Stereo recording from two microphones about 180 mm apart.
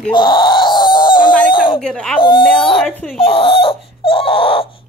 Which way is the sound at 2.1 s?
30° left (ahead or behind).